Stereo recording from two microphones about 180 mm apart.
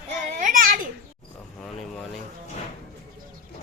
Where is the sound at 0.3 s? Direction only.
45° right (ahead or behind).